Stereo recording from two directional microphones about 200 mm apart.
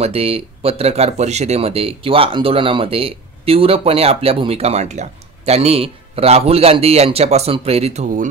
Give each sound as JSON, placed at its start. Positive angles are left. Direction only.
{"t": 0.0, "sound": "speech", "side_deg": -30}